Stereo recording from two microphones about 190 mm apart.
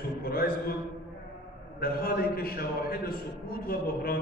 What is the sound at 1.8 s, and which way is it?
A man's voice, 50° left (ahead or behind).